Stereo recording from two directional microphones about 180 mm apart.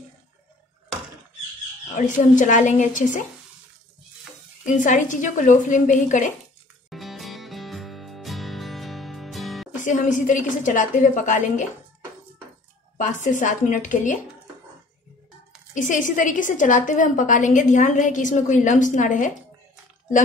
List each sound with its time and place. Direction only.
2.0 s a woman's voice: 45° left (ahead or behind)
4.6 s a woman's voice: 45° left (ahead or behind)
6.9 s music: centre (ahead or behind)
9.8 s a woman's voice: 45° left (ahead or behind)
12.9 s a woman's voice: 45° left (ahead or behind)
15.7 s a woman's voice: 45° left (ahead or behind)